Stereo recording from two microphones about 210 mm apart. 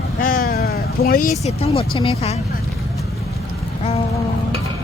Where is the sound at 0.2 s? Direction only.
40° left (ahead or behind).